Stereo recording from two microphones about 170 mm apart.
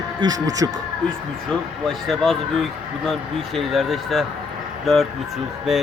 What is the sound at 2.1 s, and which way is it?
Speech, centre (ahead or behind).